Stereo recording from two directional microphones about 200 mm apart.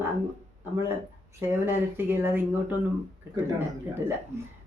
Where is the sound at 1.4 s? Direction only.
10° right (ahead or behind).